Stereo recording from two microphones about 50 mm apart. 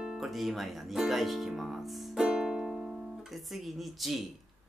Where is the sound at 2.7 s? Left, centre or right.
Centre.